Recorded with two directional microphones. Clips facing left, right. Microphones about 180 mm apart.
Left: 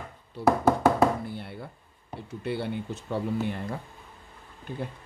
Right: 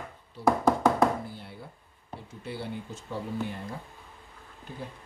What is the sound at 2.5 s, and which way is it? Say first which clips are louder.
Speech: left 6 dB; 65° left (ahead or behind).